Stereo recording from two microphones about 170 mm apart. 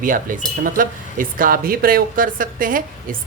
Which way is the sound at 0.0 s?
50° right (ahead or behind).